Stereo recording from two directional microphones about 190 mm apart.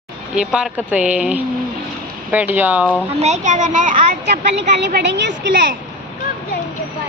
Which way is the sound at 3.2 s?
40° right (ahead or behind).